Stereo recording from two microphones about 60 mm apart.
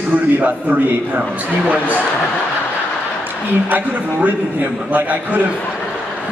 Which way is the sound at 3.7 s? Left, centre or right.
Right.